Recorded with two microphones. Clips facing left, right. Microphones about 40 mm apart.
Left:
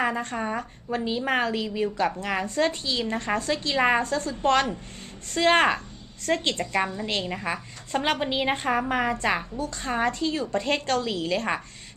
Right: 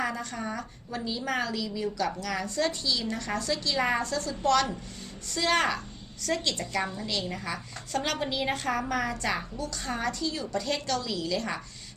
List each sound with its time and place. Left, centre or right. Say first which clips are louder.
0.0 s a woman's voice: left 5 dB; left